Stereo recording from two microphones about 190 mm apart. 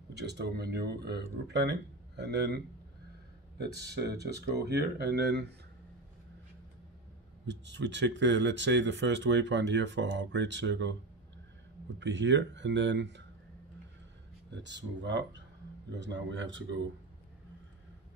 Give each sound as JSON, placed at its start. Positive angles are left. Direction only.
{"t": 0.1, "sound": "speech", "side_deg": -60}
{"t": 7.4, "sound": "speech", "side_deg": -70}
{"t": 12.0, "sound": "speech", "side_deg": -75}
{"t": 14.5, "sound": "speech", "side_deg": -70}